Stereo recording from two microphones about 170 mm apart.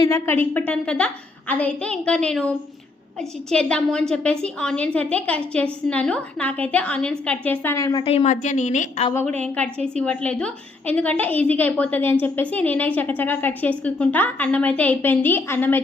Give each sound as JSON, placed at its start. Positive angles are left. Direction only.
{"t": 0.0, "sound": "a woman's voice", "side_deg": 15}
{"t": 8.0, "sound": "a woman's voice", "side_deg": 40}
{"t": 9.4, "sound": "a woman's voice", "side_deg": 5}